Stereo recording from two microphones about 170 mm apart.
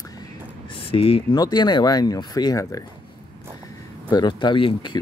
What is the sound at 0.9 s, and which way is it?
Speech, 35° left (ahead or behind).